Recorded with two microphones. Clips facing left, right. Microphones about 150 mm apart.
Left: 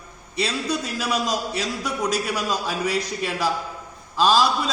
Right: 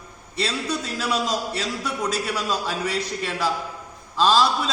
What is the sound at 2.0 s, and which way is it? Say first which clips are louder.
A man's voice: left 2 dB; 10° left (ahead or behind).